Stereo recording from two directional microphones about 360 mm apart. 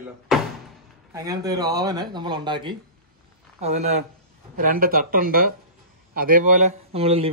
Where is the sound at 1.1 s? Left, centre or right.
Centre.